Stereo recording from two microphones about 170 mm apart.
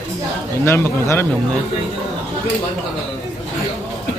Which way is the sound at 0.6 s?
15° left (ahead or behind).